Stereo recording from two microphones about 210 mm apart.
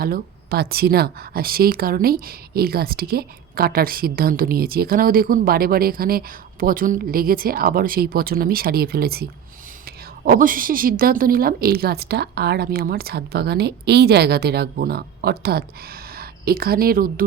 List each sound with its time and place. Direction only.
0.0 s a woman's voice: 45° right (ahead or behind)